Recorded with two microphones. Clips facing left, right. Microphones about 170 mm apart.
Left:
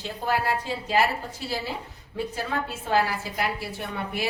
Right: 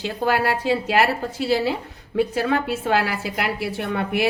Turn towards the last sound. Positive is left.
turn(degrees=-70)  # may be behind; listen again after turning